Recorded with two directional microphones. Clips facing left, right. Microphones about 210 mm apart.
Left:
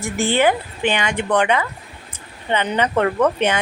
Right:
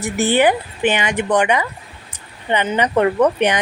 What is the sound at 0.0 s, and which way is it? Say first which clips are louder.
Speech: right 2 dB; 20° right (ahead or behind).